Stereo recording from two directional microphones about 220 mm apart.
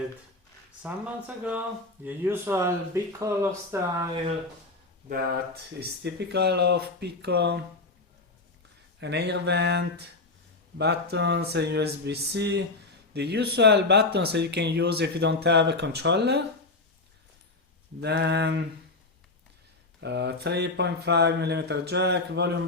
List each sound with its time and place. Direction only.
0.8 s speech: 5° right (ahead or behind)
6.0 s speech: 50° right (ahead or behind)
9.0 s speech: 50° right (ahead or behind)
18.0 s speech: 50° right (ahead or behind)
20.0 s speech: 50° right (ahead or behind)